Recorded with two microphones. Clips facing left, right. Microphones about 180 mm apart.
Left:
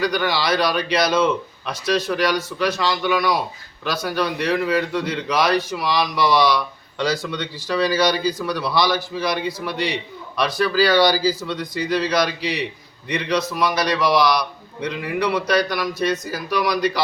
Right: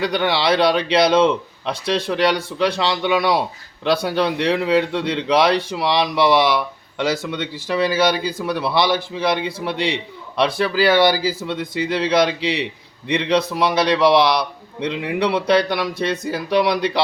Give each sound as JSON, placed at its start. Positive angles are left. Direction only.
{"t": 0.0, "sound": "speech", "side_deg": -25}